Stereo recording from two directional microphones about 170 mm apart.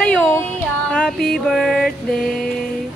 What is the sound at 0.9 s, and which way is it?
Music, 5° left (ahead or behind).